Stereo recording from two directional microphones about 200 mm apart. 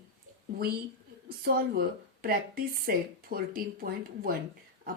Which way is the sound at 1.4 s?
50° right (ahead or behind).